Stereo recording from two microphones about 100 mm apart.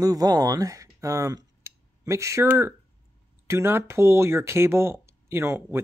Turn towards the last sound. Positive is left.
turn(degrees=-25)  # may be behind; listen again after turning